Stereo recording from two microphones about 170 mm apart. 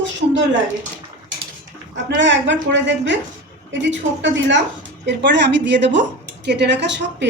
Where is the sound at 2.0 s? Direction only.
90° right.